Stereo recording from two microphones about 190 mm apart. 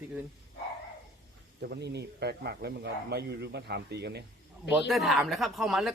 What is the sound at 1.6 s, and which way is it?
Speech, 60° right (ahead or behind).